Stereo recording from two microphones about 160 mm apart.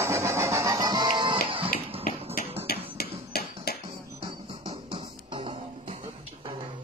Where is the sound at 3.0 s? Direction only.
75° left (ahead or behind).